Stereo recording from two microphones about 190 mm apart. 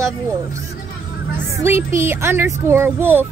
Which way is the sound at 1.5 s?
15° right (ahead or behind).